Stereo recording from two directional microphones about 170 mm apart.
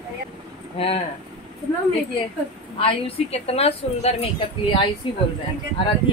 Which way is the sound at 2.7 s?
35° left (ahead or behind).